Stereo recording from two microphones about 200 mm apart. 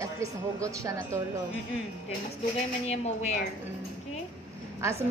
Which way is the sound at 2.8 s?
35° left (ahead or behind).